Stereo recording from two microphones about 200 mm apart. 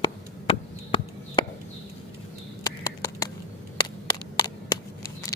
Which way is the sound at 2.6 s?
15° left (ahead or behind).